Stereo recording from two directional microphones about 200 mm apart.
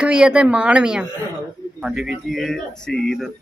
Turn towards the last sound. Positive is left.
turn(degrees=0)  # may be behind; listen again after turning